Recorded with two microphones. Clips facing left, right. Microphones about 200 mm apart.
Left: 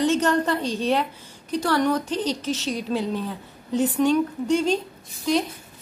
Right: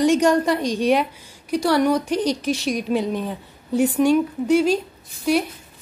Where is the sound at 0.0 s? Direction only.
10° right (ahead or behind).